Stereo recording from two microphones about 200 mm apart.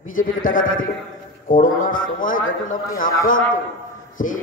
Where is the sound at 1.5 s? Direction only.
40° left (ahead or behind).